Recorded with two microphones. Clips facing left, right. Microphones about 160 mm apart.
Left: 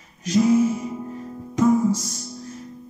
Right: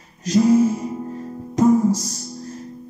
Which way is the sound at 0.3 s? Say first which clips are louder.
Right 2 dB; 40° right (ahead or behind).